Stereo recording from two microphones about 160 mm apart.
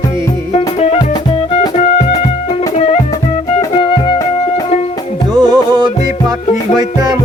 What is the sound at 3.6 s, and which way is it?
Music, 30° left (ahead or behind).